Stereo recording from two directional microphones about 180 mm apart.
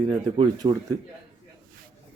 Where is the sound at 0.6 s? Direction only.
20° right (ahead or behind).